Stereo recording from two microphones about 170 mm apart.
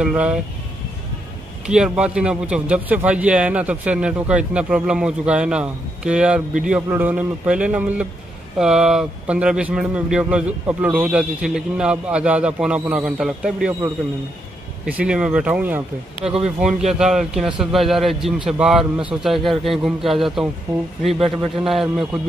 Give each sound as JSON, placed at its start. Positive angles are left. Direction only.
{"t": 0.0, "sound": "a man's voice", "side_deg": -5}
{"t": 1.7, "sound": "a man's voice", "side_deg": -5}
{"t": 14.9, "sound": "a man's voice", "side_deg": -5}
{"t": 16.3, "sound": "speech", "side_deg": -35}
{"t": 17.0, "sound": "a man's voice", "side_deg": -5}